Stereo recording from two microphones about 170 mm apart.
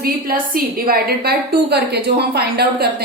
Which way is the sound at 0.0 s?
60° right (ahead or behind).